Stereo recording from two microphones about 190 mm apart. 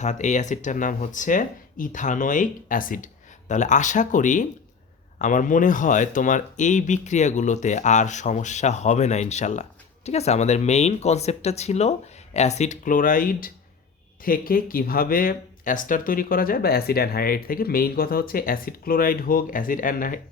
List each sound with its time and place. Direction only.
0.0 s speech: 40° left (ahead or behind)